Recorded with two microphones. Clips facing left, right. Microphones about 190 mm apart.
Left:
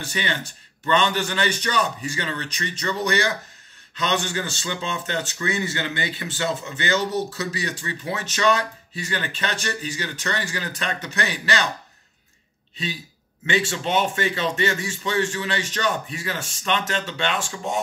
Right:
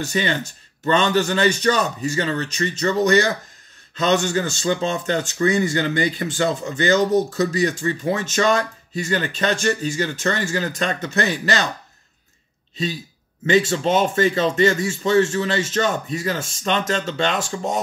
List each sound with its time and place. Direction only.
0.0 s speech: 40° right (ahead or behind)
13.5 s speech: 40° right (ahead or behind)